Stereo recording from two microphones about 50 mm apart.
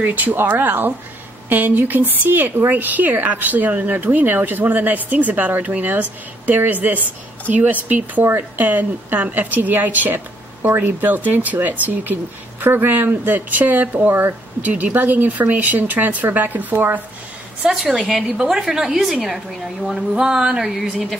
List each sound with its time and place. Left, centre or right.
0.0 s a woman's voice: right
13.5 s a woman's voice: right
14.6 s a woman's voice: right
17.6 s a woman's voice: centre
20.2 s a woman's voice: centre
20.7 s a woman's voice: centre